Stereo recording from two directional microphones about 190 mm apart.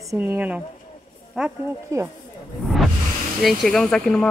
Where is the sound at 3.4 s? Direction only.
Centre (ahead or behind).